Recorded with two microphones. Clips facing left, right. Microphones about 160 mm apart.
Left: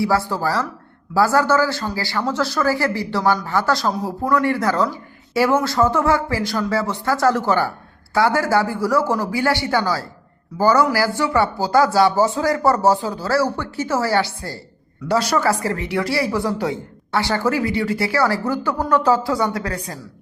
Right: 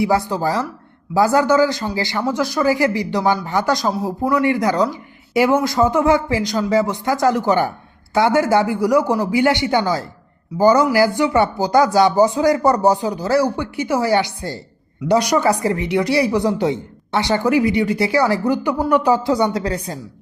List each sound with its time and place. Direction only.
0.0 s speech: 20° right (ahead or behind)